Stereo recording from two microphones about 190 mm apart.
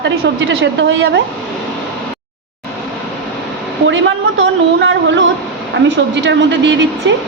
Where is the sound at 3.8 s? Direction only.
80° right.